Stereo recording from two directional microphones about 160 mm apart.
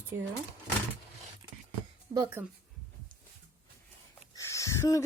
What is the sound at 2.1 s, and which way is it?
Speech, 35° right (ahead or behind).